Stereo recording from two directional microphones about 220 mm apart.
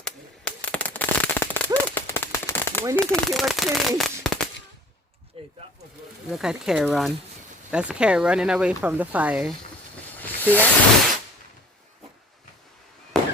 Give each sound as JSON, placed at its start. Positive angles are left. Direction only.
{"t": 0.0, "sound": "a sound", "side_deg": 5}
{"t": 0.9, "sound": "firecracker", "side_deg": 5}
{"t": 2.9, "sound": "speech", "side_deg": 0}
{"t": 5.4, "sound": "speech", "side_deg": -25}
{"t": 6.3, "sound": "speech", "side_deg": 0}
{"t": 10.2, "sound": "hiss", "side_deg": 10}
{"t": 13.1, "sound": "fireworks", "side_deg": 0}